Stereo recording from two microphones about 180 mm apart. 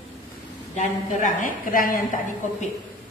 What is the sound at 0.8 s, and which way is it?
A woman's voice, 45° left (ahead or behind).